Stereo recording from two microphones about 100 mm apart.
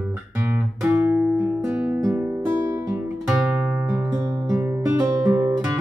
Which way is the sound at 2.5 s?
40° right (ahead or behind).